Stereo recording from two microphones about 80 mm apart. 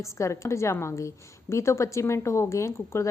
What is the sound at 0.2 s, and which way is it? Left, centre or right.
A woman's voice, left.